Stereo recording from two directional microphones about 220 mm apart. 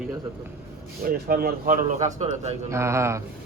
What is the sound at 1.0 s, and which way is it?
Speech, 45° right (ahead or behind).